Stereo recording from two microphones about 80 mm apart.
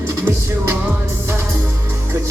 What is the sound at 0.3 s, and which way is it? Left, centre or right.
Music, right.